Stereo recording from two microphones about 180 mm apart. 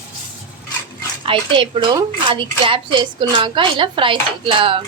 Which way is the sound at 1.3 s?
30° right (ahead or behind).